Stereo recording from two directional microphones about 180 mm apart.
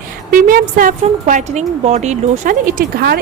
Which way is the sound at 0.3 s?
50° right (ahead or behind).